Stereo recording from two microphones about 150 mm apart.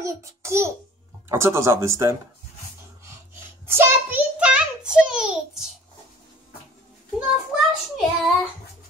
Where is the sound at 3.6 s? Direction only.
15° right (ahead or behind).